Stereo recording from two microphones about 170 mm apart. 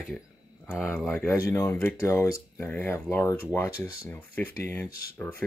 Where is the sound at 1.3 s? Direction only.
20° left (ahead or behind).